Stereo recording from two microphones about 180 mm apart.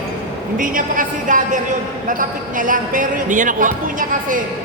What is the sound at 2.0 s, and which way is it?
Speech, 50° right (ahead or behind).